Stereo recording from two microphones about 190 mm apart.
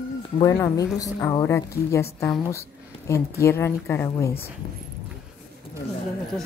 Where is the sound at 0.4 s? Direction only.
15° left (ahead or behind).